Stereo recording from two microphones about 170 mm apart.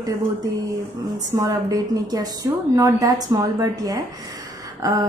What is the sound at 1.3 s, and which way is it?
Speech, 20° right (ahead or behind).